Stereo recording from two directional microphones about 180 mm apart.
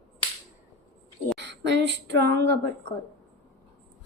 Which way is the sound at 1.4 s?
75° right (ahead or behind).